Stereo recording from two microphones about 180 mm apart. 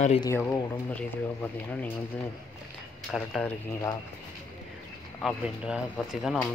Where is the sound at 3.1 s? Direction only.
5° left (ahead or behind).